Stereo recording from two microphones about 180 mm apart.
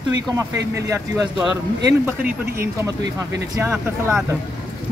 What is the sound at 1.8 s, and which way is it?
Speech, 10° right (ahead or behind).